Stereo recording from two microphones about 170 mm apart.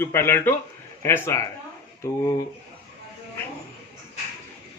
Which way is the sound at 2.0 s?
20° left (ahead or behind).